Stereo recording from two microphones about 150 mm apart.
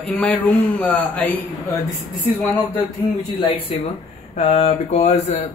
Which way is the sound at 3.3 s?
30° left (ahead or behind).